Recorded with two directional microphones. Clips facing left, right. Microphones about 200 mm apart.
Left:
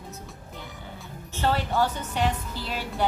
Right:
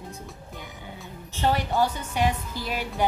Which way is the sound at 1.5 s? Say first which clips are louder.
Right 1 dB; 10° right (ahead or behind).